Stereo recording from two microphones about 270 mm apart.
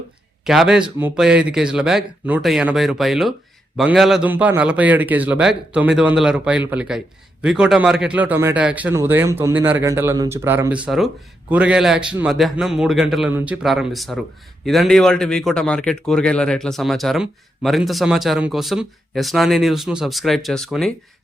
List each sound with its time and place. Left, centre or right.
0.4 s speech: centre